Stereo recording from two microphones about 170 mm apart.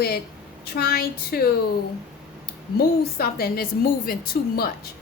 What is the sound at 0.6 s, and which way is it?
Speech, 65° left (ahead or behind).